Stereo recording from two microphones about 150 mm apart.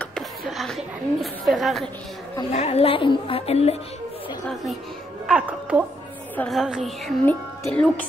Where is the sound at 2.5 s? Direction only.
40° left (ahead or behind).